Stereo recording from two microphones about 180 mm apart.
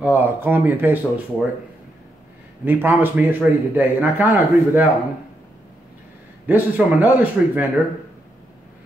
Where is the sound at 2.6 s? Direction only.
10° right (ahead or behind).